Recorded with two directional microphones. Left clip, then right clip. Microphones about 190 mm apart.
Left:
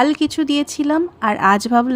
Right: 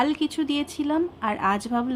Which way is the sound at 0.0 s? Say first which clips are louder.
Left 7 dB; 40° left (ahead or behind).